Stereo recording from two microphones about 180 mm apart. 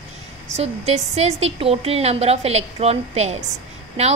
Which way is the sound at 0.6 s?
35° right (ahead or behind).